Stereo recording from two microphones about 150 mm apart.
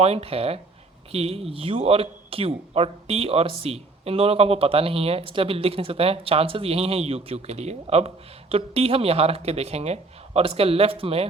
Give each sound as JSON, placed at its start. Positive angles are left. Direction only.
{"t": 0.0, "sound": "speech", "side_deg": -45}